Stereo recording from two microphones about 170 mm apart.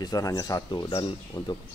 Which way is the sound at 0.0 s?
20° left (ahead or behind).